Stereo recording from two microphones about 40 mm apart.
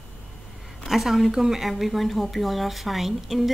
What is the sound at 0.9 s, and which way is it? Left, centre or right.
A woman's voice, centre.